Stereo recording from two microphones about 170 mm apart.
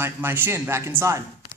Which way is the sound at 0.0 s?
15° right (ahead or behind).